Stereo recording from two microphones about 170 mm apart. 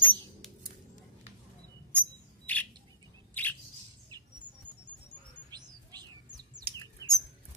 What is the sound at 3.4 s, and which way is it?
Squawk, 10° left (ahead or behind).